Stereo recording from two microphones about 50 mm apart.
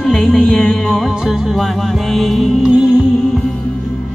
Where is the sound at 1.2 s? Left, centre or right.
Centre.